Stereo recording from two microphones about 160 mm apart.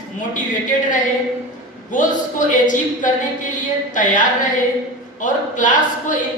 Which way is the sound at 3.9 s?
55° left (ahead or behind).